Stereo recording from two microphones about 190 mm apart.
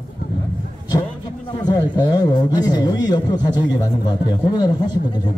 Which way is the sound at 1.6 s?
20° left (ahead or behind).